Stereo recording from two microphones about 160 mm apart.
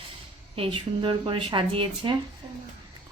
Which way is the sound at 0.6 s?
30° right (ahead or behind).